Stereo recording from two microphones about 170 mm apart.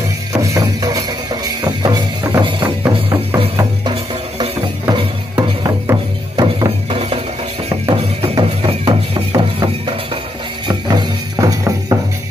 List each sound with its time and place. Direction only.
0.3 s music: 20° right (ahead or behind)
2.8 s music: 15° right (ahead or behind)